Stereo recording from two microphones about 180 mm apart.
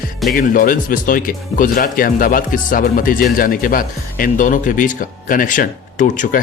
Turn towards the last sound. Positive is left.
turn(degrees=45)  # may be behind; listen again after turning